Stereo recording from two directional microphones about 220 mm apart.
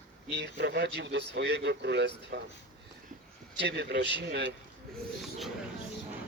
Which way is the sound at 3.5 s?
50° right (ahead or behind).